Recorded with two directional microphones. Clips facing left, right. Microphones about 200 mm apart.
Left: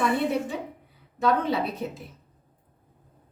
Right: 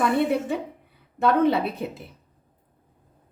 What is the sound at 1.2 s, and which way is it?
Speech, 55° right (ahead or behind).